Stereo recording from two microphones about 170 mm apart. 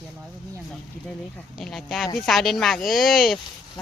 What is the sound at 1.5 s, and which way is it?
Speech, centre (ahead or behind).